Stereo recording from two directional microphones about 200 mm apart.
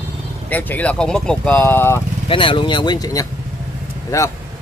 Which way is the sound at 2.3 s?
25° left (ahead or behind).